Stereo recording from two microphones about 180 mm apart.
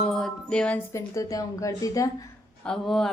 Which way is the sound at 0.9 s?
20° left (ahead or behind).